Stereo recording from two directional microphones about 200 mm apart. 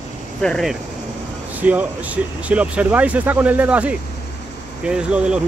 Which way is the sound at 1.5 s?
10° right (ahead or behind).